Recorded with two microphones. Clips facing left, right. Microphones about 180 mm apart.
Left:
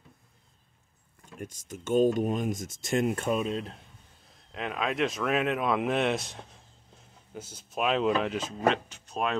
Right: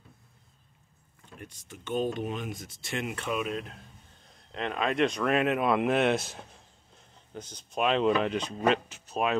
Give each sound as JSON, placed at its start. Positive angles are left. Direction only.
{"t": 1.4, "sound": "speech", "side_deg": 45}
{"t": 3.4, "sound": "speech", "side_deg": 30}
{"t": 4.5, "sound": "speech", "side_deg": 5}